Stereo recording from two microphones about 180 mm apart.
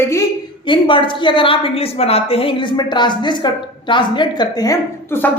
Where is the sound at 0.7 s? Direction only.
25° left (ahead or behind).